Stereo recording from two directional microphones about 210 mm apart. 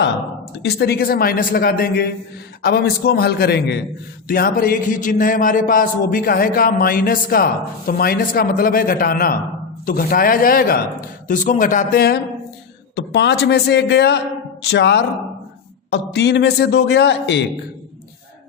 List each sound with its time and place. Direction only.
0.6 s a man's voice: 50° left (ahead or behind)